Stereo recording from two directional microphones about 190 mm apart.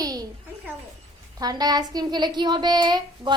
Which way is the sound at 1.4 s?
20° right (ahead or behind).